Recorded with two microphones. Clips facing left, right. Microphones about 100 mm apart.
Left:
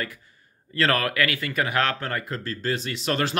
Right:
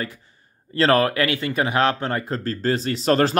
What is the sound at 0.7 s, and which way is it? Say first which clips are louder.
Speech: right 5 dB; 30° right (ahead or behind).